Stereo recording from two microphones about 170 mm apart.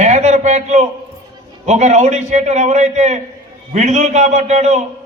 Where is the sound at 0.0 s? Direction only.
45° right (ahead or behind).